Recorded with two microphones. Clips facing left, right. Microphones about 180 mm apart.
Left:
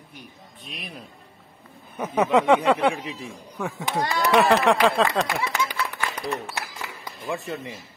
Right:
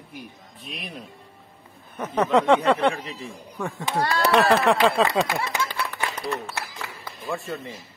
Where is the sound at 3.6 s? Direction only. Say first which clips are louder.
Even; centre (ahead or behind).